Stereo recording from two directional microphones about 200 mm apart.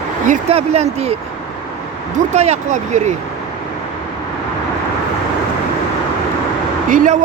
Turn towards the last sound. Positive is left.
turn(degrees=-40)  # may be behind; listen again after turning